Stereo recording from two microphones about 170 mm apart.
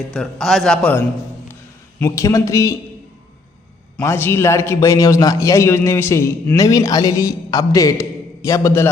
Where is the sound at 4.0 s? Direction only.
15° left (ahead or behind).